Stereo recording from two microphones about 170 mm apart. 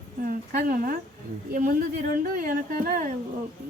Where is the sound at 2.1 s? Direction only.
55° right (ahead or behind).